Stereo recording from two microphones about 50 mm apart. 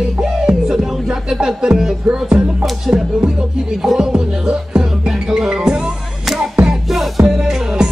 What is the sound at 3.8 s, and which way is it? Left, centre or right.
Music, centre.